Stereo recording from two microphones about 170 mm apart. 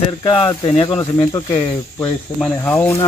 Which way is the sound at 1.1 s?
25° left (ahead or behind).